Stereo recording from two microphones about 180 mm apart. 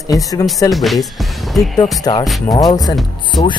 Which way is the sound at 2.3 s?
Centre (ahead or behind).